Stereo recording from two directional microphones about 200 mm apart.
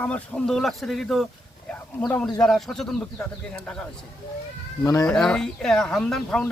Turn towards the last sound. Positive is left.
turn(degrees=5)  # may be behind; listen again after turning